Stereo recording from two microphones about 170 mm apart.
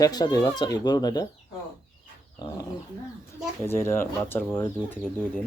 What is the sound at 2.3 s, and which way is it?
Speech, 20° left (ahead or behind).